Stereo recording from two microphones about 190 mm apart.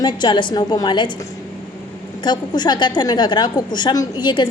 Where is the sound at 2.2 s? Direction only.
20° left (ahead or behind).